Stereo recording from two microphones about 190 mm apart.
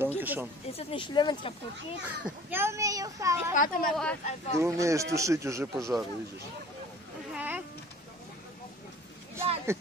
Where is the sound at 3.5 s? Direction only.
45° left (ahead or behind).